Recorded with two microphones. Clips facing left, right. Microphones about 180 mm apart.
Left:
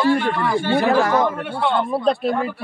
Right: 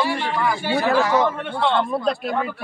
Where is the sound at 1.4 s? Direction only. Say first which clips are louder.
Even; 10° left (ahead or behind).